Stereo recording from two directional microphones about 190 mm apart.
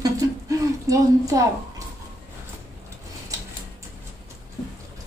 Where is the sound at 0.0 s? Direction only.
15° right (ahead or behind).